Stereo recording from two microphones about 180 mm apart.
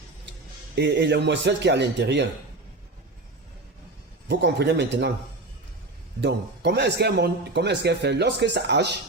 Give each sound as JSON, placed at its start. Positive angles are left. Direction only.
{"t": 0.8, "sound": "a man's voice", "side_deg": -70}
{"t": 4.3, "sound": "a man's voice", "side_deg": -70}
{"t": 6.2, "sound": "a man's voice", "side_deg": -65}